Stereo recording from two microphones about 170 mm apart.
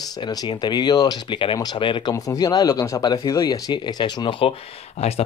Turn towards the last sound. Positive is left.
turn(degrees=35)  # may be behind; listen again after turning